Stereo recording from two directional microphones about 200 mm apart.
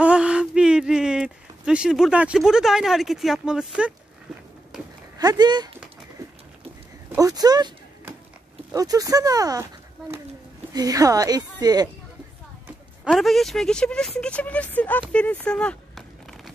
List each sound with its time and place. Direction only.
0.0 s speech: 5° right (ahead or behind)
5.2 s a woman's voice: 20° right (ahead or behind)
7.1 s a sound: 15° right (ahead or behind)
8.7 s speech: 15° right (ahead or behind)
10.7 s a woman's voice: 15° right (ahead or behind)
12.6 s speech: 5° right (ahead or behind)